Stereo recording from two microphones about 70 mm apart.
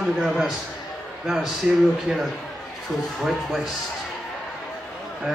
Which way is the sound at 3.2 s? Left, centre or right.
Centre.